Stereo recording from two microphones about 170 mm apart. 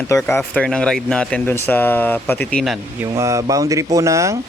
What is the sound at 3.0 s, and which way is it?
Speech, 15° right (ahead or behind).